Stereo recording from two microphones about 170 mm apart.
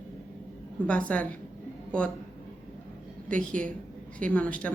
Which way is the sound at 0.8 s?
5° left (ahead or behind).